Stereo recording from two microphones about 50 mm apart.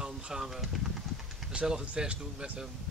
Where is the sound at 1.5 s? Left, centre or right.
Centre.